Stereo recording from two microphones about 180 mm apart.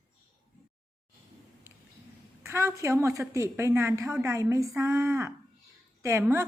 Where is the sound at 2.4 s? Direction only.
15° right (ahead or behind).